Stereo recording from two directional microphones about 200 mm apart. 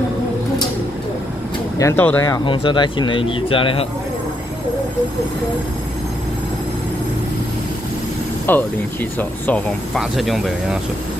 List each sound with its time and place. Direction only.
1.8 s speech: 10° left (ahead or behind)
8.5 s speech: 10° left (ahead or behind)